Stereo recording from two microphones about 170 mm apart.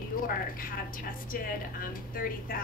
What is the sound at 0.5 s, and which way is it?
A woman's voice, 55° left (ahead or behind).